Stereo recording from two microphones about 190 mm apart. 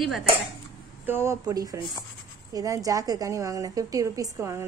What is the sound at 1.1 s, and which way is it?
A woman's voice, 15° right (ahead or behind).